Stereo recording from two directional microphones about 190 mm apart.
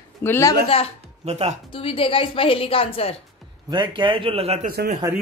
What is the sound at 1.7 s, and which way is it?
A woman's voice, 30° left (ahead or behind).